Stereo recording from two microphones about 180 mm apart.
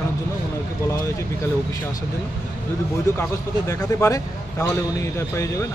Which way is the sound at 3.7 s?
15° left (ahead or behind).